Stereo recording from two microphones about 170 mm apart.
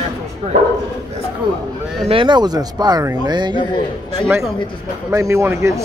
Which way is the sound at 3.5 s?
25° left (ahead or behind).